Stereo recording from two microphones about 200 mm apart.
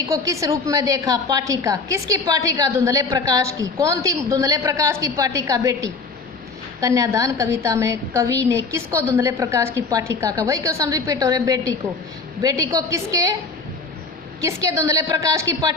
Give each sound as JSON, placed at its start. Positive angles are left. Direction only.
{"t": 0.0, "sound": "a woman's voice", "side_deg": -15}
{"t": 14.4, "sound": "a woman's voice", "side_deg": -15}